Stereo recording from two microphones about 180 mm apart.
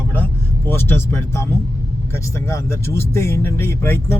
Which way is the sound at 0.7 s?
10° left (ahead or behind).